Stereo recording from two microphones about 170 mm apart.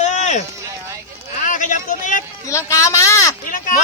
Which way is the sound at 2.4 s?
20° left (ahead or behind).